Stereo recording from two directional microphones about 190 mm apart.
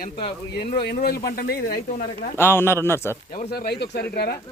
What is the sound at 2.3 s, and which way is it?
Speech, 10° left (ahead or behind).